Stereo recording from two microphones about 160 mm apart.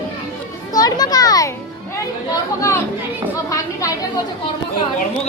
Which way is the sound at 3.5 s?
20° left (ahead or behind).